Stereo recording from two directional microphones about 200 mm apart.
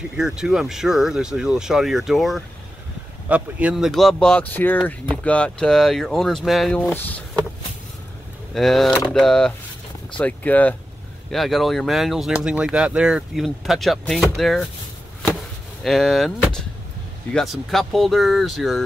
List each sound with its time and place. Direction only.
0.2 s speech: 5° right (ahead or behind)
8.5 s speech: centre (ahead or behind)
15.8 s speech: centre (ahead or behind)